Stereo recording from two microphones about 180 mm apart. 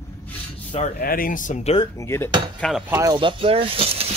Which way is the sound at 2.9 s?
15° right (ahead or behind).